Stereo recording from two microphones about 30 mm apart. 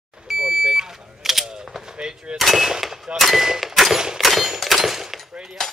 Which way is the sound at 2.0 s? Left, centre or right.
Right.